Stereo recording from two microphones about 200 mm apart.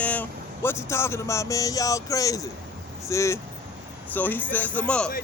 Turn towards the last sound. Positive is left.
turn(degrees=5)  # may be behind; listen again after turning